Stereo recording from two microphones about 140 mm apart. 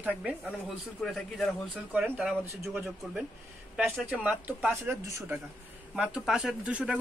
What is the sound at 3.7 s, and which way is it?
Speech, 5° right (ahead or behind).